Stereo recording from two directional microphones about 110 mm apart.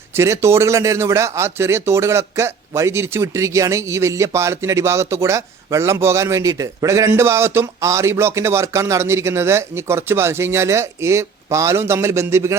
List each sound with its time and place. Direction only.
0.2 s speech: 25° right (ahead or behind)